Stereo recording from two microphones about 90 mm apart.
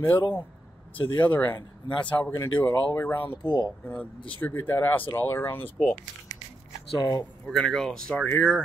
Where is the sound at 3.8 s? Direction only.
20° left (ahead or behind).